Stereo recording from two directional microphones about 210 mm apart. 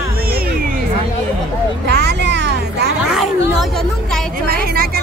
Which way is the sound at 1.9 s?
55° right (ahead or behind).